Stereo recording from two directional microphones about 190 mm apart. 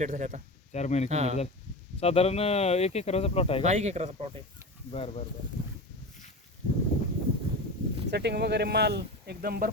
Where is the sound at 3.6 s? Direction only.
35° right (ahead or behind).